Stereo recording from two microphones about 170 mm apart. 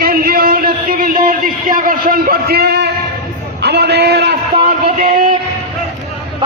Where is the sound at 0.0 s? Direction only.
60° right (ahead or behind).